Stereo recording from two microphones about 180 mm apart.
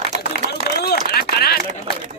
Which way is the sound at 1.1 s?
60° left (ahead or behind).